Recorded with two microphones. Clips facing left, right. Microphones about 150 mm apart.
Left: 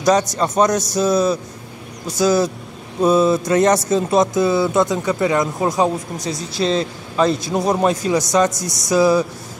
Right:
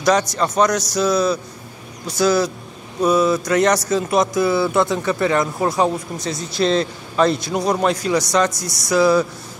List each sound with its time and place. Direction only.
0.0 s a man's voice: 20° left (ahead or behind)
1.0 s speech: 50° left (ahead or behind)
2.1 s speech: 20° left (ahead or behind)
6.6 s speech: 40° right (ahead or behind)
7.2 s a man's voice: 40° left (ahead or behind)
7.7 s speech: 20° left (ahead or behind)